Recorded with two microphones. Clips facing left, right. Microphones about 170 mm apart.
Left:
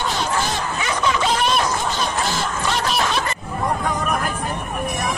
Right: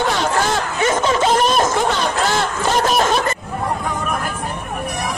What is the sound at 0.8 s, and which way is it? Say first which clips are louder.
Snicker: right 5 dB; 45° right (ahead or behind).